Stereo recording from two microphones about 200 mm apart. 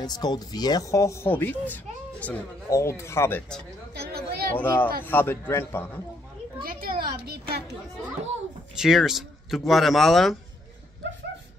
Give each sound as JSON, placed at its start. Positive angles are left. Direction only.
{"t": 0.0, "sound": "speech", "side_deg": 20}
{"t": 3.9, "sound": "chatter", "side_deg": -50}
{"t": 4.6, "sound": "speech", "side_deg": 10}
{"t": 6.6, "sound": "a sound", "side_deg": -45}
{"t": 8.7, "sound": "speech", "side_deg": 0}